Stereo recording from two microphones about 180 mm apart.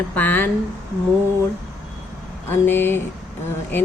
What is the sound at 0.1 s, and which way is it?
Speech, 10° left (ahead or behind).